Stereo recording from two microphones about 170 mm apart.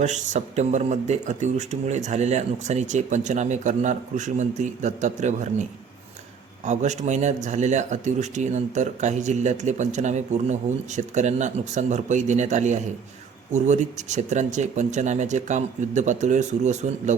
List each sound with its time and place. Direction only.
0.0 s a man's voice: 45° right (ahead or behind)
6.7 s a man's voice: 45° right (ahead or behind)